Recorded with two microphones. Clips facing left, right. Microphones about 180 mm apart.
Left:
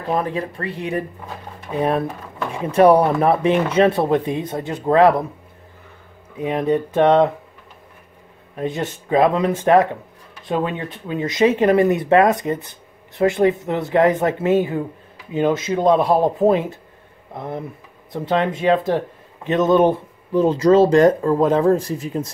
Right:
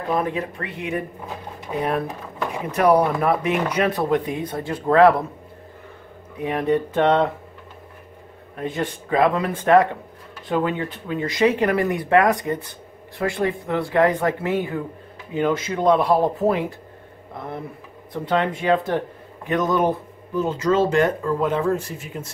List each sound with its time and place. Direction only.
0.1 s speech: 35° left (ahead or behind)
6.4 s speech: 20° left (ahead or behind)
8.5 s speech: 20° left (ahead or behind)
18.1 s speech: 20° left (ahead or behind); by 22.3 s 35° left (ahead or behind)